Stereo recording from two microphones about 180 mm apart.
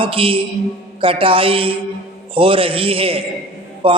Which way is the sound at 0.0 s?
30° right (ahead or behind).